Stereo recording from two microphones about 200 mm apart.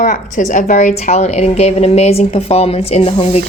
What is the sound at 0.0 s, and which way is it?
A woman's voice, 40° left (ahead or behind).